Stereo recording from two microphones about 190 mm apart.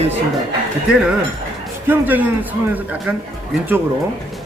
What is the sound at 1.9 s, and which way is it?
A man's voice, 10° right (ahead or behind).